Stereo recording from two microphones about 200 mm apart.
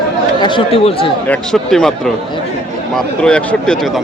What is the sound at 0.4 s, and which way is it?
Speech, 25° left (ahead or behind).